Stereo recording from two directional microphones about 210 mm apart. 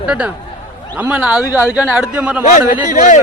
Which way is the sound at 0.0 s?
5° right (ahead or behind).